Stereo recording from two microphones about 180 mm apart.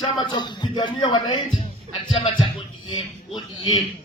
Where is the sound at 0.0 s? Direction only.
25° left (ahead or behind).